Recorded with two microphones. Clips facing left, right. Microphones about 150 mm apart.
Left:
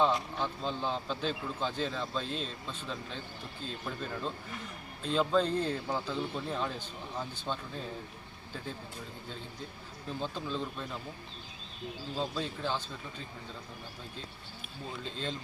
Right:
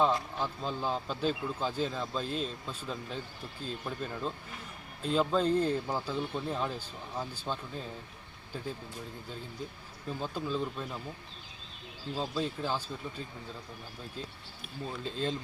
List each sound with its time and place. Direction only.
0.3 s a man's voice: 5° right (ahead or behind)
10.1 s speech: 5° right (ahead or behind)
12.1 s a man's voice: 5° right (ahead or behind)
15.0 s a man's voice: 5° right (ahead or behind)